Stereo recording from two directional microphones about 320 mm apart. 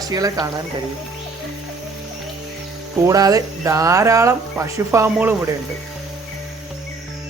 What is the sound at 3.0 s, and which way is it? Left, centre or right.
Speech, centre.